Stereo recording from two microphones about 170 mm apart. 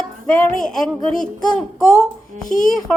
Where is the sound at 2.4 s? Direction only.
50° left (ahead or behind).